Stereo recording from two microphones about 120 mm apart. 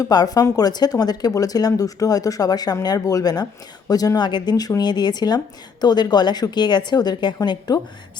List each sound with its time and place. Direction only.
0.0 s speech: 35° left (ahead or behind)